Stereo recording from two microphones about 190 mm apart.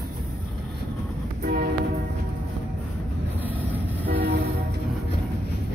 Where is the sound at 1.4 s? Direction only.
55° right (ahead or behind).